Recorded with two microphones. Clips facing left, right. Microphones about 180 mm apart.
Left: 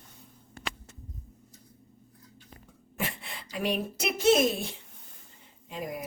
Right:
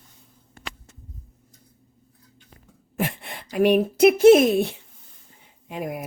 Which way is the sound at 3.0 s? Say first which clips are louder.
Right 8 dB; 55° right (ahead or behind).